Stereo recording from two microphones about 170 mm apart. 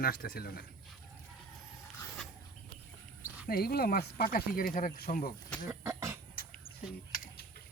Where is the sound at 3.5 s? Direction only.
65° left (ahead or behind).